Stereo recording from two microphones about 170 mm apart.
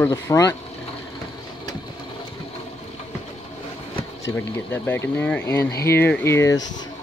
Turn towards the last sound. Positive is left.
turn(degrees=15)  # may be behind; listen again after turning